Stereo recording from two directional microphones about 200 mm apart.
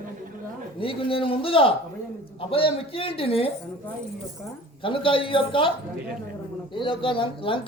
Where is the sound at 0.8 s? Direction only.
25° left (ahead or behind).